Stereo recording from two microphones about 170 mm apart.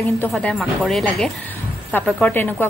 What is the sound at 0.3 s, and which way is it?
A woman's voice, 5° left (ahead or behind).